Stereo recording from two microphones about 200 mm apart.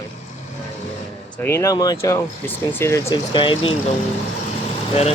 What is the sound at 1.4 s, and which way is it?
Speech, 15° left (ahead or behind).